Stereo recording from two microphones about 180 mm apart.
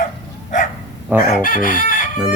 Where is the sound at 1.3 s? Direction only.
50° left (ahead or behind).